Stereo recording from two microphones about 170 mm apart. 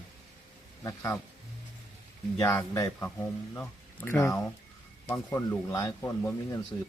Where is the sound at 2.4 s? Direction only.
15° left (ahead or behind).